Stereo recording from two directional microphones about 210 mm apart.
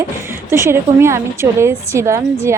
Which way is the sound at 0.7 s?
10° right (ahead or behind).